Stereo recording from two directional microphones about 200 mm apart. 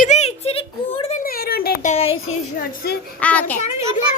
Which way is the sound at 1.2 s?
50° left (ahead or behind).